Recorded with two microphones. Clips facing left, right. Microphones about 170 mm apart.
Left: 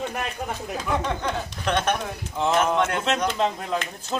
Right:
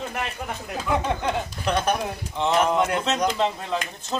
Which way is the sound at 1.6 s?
10° right (ahead or behind).